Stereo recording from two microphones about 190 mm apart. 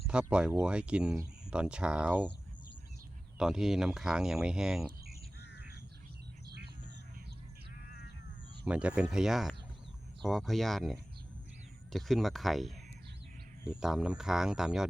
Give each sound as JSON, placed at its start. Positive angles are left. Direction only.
{"t": 0.1, "sound": "speech", "side_deg": -5}
{"t": 3.3, "sound": "speech", "side_deg": -5}
{"t": 8.6, "sound": "speech", "side_deg": -5}